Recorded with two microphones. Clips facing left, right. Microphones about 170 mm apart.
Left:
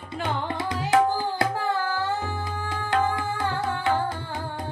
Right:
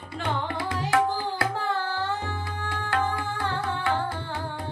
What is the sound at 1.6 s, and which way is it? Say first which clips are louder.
Music: left 2 dB; 5° left (ahead or behind).